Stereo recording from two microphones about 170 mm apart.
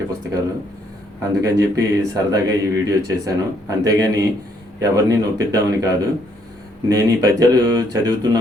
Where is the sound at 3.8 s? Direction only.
20° right (ahead or behind).